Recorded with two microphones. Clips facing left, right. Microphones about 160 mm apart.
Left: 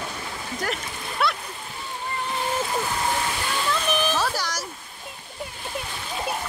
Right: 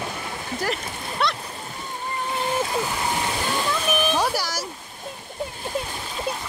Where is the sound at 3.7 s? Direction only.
10° right (ahead or behind).